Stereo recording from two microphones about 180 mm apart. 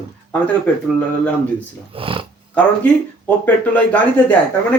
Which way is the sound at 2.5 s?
10° left (ahead or behind).